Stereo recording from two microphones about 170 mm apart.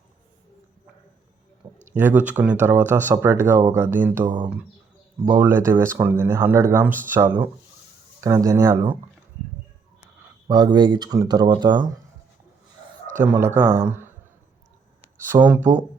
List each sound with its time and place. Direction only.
1.9 s speech: 10° right (ahead or behind)
10.4 s speech: 25° right (ahead or behind)
13.1 s speech: 10° right (ahead or behind)
15.3 s speech: 10° right (ahead or behind)